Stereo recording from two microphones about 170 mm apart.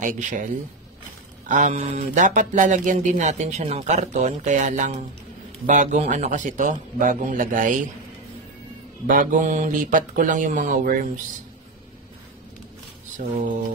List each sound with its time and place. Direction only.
0.0 s speech: 50° right (ahead or behind)
9.0 s speech: 55° right (ahead or behind)